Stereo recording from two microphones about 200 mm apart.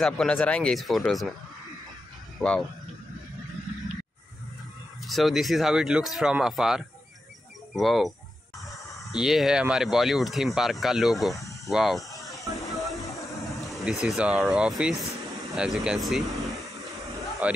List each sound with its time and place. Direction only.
0.0 s speech: 5° left (ahead or behind)
2.3 s speech: 5° left (ahead or behind)
5.0 s speech: centre (ahead or behind)
11.3 s snake: 15° left (ahead or behind)
11.7 s speech: centre (ahead or behind)
12.7 s music: centre (ahead or behind)
13.0 s a sound: 15° left (ahead or behind)
13.5 s speech: centre (ahead or behind)
16.4 s a sound: centre (ahead or behind)